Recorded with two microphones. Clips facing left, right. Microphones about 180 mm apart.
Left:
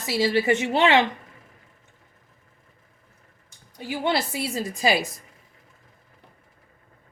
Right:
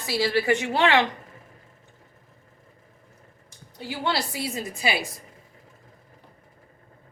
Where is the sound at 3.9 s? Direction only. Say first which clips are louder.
Left 3 dB; 20° left (ahead or behind).